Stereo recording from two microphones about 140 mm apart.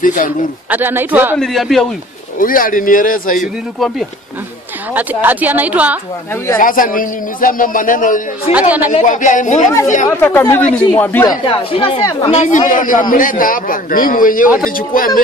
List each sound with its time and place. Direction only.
0.0 s a man's voice: 75° left (ahead or behind)
0.7 s speech: 15° right (ahead or behind)
1.4 s speech: centre (ahead or behind)
2.3 s a man's voice: 80° left
4.9 s speech: 10° right (ahead or behind)
6.6 s a man's voice: 75° left (ahead or behind)
8.5 s speech: 10° right (ahead or behind)
9.0 s speech: 65° left (ahead or behind)
10.2 s speech: 15° left (ahead or behind)
11.4 s speech: 40° left (ahead or behind)
12.0 s speech: 25° left (ahead or behind)
12.3 s a man's voice: 55° left (ahead or behind); by 15.2 s 85° left